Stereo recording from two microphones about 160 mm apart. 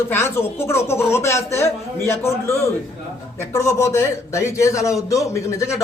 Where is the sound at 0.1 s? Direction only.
15° left (ahead or behind).